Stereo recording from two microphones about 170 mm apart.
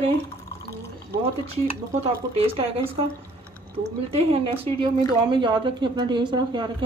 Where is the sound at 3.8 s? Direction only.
35° right (ahead or behind).